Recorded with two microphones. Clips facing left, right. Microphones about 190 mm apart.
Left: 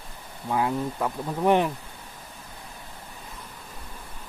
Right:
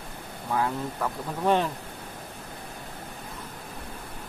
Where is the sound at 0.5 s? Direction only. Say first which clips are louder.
Left 2 dB; 15° left (ahead or behind).